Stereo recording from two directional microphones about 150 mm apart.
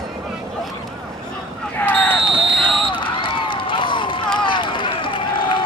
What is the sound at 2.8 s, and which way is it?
Run, 35° left (ahead or behind).